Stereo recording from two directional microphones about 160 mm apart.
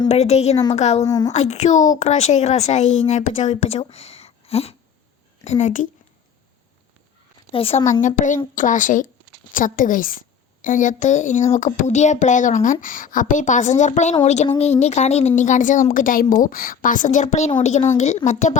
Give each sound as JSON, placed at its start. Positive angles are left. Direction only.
{"t": 0.1, "sound": "speech", "side_deg": 45}
{"t": 1.0, "sound": "a woman's voice", "side_deg": 20}
{"t": 1.3, "sound": "speech", "side_deg": 45}
{"t": 3.8, "sound": "a sound", "side_deg": 35}
{"t": 5.5, "sound": "speech", "side_deg": 50}
{"t": 7.5, "sound": "a woman's voice", "side_deg": 35}
{"t": 8.0, "sound": "a woman's voice", "side_deg": 55}